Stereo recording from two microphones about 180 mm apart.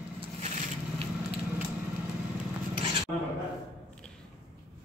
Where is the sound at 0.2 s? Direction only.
40° right (ahead or behind).